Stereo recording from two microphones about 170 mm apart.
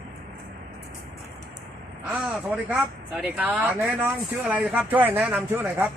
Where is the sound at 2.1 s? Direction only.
5° right (ahead or behind).